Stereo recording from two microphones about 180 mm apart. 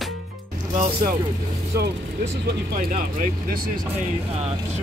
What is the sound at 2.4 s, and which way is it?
Speech, 55° right (ahead or behind).